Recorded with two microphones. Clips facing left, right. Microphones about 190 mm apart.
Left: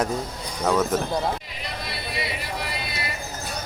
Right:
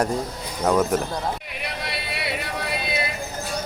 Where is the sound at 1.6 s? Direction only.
65° right (ahead or behind).